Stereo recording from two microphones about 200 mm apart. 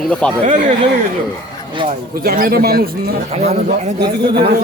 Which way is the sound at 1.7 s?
25° right (ahead or behind).